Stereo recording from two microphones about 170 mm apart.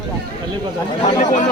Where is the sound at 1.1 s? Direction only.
45° left (ahead or behind).